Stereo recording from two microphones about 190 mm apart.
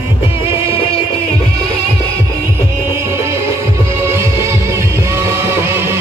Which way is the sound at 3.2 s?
15° right (ahead or behind).